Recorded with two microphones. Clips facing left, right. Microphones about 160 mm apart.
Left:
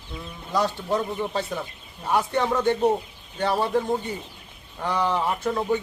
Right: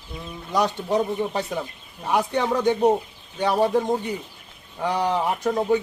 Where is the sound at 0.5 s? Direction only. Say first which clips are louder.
Right 2 dB; 20° right (ahead or behind).